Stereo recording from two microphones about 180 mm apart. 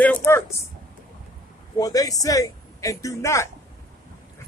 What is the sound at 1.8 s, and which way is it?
Speech, 20° left (ahead or behind).